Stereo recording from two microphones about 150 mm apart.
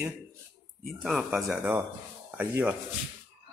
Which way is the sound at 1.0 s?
Centre (ahead or behind).